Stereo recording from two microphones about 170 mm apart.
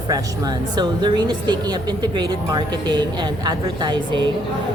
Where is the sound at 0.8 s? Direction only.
25° right (ahead or behind).